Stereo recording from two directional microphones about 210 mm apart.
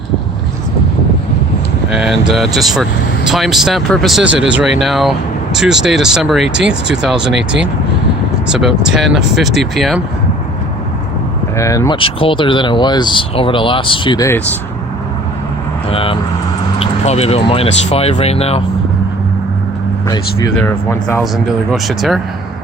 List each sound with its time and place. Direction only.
1.9 s speech: 5° right (ahead or behind)
11.5 s speech: 15° left (ahead or behind)
15.9 s speech: 25° left (ahead or behind)
20.6 s speech: 10° left (ahead or behind)